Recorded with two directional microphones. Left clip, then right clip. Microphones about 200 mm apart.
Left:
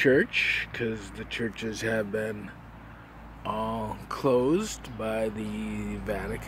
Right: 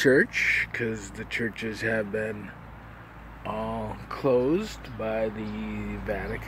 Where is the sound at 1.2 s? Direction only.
5° left (ahead or behind).